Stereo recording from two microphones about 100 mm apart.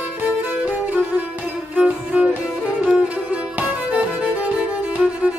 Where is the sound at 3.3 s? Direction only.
15° right (ahead or behind).